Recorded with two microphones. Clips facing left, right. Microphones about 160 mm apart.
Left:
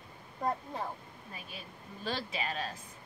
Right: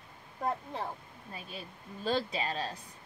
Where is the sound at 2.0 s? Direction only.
35° right (ahead or behind).